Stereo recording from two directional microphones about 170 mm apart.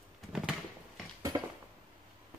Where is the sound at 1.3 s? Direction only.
25° right (ahead or behind).